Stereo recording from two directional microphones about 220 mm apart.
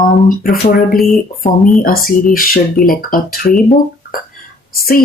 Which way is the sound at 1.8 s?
40° left (ahead or behind).